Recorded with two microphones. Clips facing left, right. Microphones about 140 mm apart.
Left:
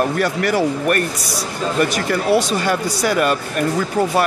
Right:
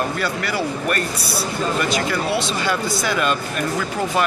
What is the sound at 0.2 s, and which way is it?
A man's voice, 50° left (ahead or behind).